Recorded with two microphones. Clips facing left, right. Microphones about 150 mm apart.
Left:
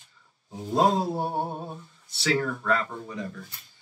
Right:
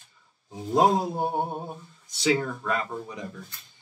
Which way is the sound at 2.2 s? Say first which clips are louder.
Right 1 dB; 15° right (ahead or behind).